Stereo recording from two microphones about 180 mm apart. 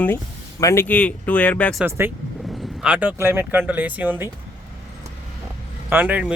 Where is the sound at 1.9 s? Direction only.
15° right (ahead or behind).